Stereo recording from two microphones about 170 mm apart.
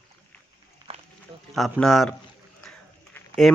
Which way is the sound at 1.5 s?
Centre (ahead or behind).